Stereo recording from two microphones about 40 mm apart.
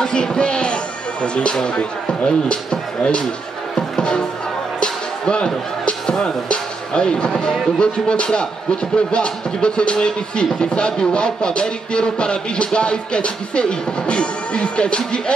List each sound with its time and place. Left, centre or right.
0.0 s speech: left
3.7 s music: centre
4.7 s speech: left